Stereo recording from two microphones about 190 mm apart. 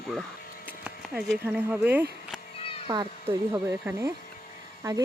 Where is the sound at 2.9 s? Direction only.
25° right (ahead or behind).